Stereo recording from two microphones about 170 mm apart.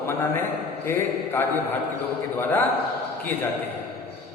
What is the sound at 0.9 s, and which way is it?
A man's voice, 15° left (ahead or behind).